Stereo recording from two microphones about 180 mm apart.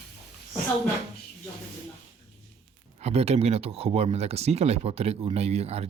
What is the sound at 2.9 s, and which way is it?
Speech, 35° right (ahead or behind).